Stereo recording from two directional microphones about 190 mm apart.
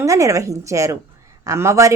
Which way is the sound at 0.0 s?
15° right (ahead or behind).